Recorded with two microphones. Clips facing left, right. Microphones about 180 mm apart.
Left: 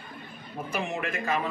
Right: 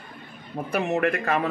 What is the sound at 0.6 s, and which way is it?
Speech, 65° right (ahead or behind).